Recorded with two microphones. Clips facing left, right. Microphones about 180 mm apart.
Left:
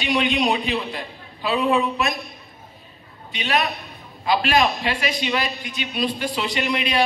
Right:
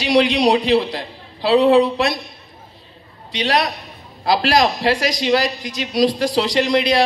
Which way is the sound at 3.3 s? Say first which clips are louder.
Right 4 dB; 90° right.